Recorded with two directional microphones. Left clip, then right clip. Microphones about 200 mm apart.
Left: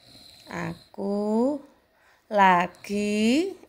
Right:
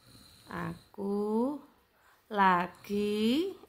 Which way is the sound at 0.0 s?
Centre (ahead or behind).